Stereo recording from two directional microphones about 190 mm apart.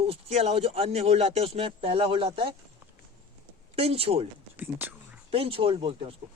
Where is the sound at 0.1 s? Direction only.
30° right (ahead or behind).